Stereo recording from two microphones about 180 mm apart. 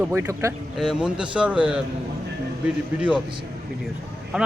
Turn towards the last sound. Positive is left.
turn(degrees=-5)  # may be behind; listen again after turning